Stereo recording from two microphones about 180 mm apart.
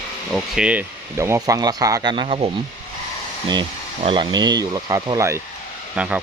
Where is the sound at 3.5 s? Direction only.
25° right (ahead or behind).